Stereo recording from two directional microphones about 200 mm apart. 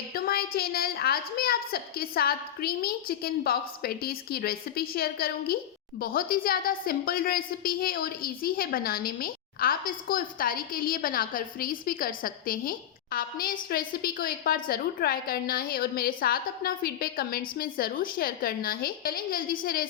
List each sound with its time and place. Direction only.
0.1 s a woman's voice: 50° left (ahead or behind)